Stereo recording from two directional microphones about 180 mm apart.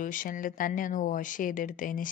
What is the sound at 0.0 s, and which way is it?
Speech, 50° left (ahead or behind).